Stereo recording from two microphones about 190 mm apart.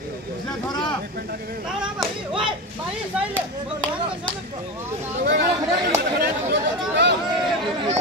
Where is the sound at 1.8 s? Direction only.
Centre (ahead or behind).